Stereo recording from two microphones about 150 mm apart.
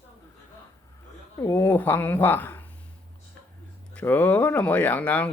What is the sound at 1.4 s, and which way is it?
Speech, 15° left (ahead or behind).